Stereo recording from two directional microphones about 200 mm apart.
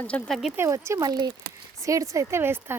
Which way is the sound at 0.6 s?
15° right (ahead or behind).